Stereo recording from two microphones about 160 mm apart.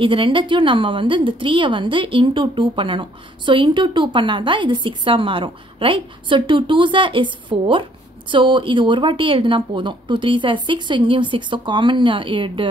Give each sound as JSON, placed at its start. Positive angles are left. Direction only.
{"t": 0.0, "sound": "a woman's voice", "side_deg": -30}